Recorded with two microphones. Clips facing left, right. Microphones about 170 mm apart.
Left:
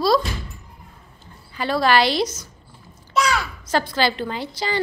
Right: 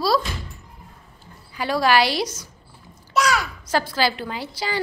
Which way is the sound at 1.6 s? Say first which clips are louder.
Left 1 dB; 10° right (ahead or behind).